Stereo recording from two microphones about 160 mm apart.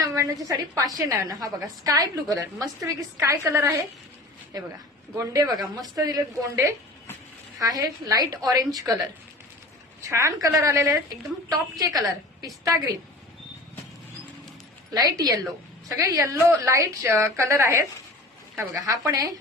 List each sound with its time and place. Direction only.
0.0 s a woman's voice: 20° right (ahead or behind)
10.0 s a woman's voice: 20° right (ahead or behind)
14.9 s a woman's voice: 25° right (ahead or behind)